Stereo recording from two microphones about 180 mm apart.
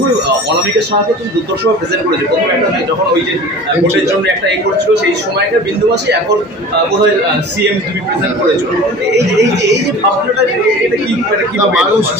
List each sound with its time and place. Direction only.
9.1 s speech: 70° right (ahead or behind)